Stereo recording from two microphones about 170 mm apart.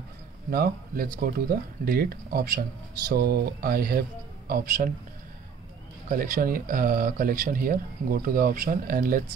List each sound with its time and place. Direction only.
0.5 s speech: 60° right (ahead or behind)
6.0 s speech: 55° right (ahead or behind)